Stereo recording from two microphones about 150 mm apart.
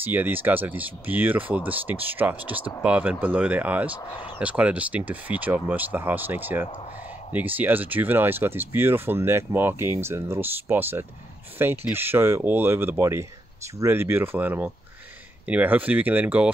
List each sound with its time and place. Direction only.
0.0 s speech: 15° right (ahead or behind)